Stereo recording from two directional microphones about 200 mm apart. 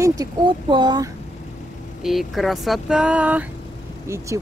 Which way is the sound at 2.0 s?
Centre (ahead or behind).